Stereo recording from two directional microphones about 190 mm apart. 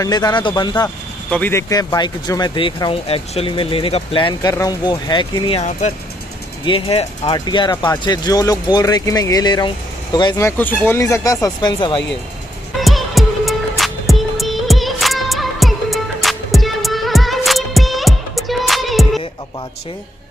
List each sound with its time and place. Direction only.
0.0 s speech: 20° left (ahead or behind)
0.8 s speech: 10° left (ahead or behind)
12.7 s music: centre (ahead or behind)